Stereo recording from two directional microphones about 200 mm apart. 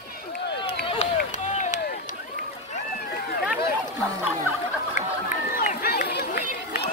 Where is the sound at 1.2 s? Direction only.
40° left (ahead or behind).